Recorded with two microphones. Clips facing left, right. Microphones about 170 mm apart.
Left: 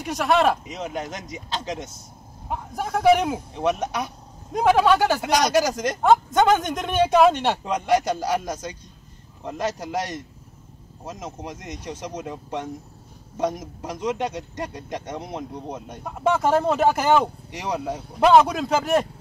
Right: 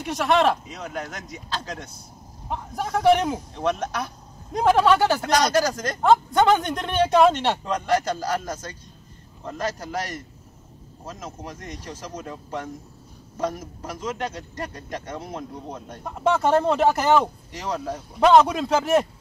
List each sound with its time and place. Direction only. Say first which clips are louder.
0.0 s a man's voice: even; centre (ahead or behind)
0.7 s a man's voice: left 3 dB; 20° left (ahead or behind)
2.4 s a man's voice: even; 5° left (ahead or behind)
3.5 s a man's voice: left 3 dB; 15° left (ahead or behind)
6.3 s a man's voice: even; centre (ahead or behind)